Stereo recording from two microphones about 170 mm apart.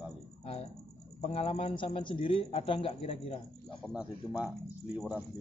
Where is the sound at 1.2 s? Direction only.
35° left (ahead or behind).